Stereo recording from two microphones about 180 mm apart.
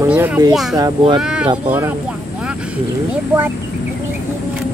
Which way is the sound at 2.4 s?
5° right (ahead or behind).